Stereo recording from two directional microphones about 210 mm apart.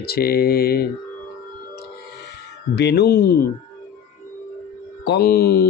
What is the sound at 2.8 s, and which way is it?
Mantra, 50° left (ahead or behind).